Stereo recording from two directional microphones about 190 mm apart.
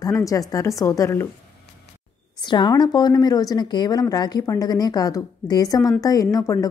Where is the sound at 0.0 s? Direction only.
15° left (ahead or behind).